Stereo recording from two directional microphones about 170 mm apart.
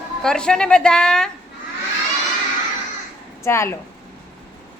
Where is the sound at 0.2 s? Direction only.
5° left (ahead or behind).